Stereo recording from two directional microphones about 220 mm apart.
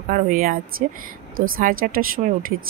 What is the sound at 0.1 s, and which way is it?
Speech, 40° right (ahead or behind).